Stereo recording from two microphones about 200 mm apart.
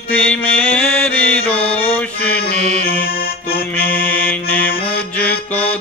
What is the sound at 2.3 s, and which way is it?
Music, 50° left (ahead or behind).